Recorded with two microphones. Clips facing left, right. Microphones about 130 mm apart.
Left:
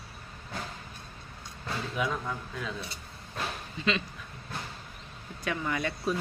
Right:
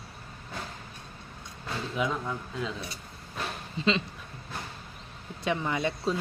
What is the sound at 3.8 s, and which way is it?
Speech, 30° right (ahead or behind).